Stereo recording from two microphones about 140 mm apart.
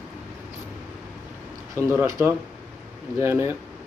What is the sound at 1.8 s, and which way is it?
Speech, 20° right (ahead or behind).